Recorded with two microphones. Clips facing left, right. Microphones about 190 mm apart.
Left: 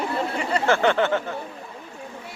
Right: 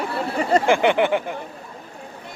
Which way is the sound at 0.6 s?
15° right (ahead or behind).